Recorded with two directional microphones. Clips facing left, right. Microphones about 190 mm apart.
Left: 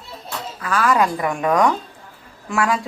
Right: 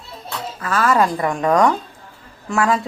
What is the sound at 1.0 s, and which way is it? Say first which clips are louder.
A woman's voice: right 1 dB; 5° left (ahead or behind).